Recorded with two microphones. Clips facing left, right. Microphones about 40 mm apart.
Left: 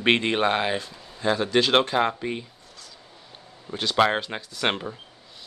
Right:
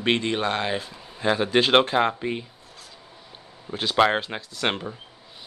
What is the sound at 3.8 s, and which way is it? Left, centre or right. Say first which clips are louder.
Speech: right 1 dB; centre.